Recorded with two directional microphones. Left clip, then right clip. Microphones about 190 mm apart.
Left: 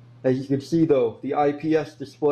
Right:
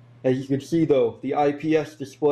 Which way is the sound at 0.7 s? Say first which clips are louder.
Even; 15° right (ahead or behind).